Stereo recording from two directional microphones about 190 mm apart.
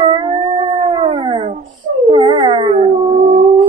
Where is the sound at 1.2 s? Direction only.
25° right (ahead or behind).